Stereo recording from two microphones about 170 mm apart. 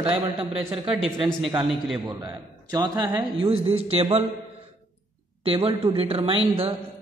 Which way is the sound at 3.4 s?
35° right (ahead or behind).